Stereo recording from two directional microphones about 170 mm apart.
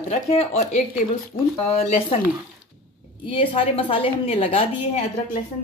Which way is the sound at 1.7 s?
35° left (ahead or behind).